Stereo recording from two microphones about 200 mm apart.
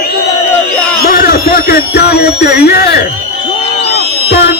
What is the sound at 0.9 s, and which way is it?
Speech, 50° left (ahead or behind).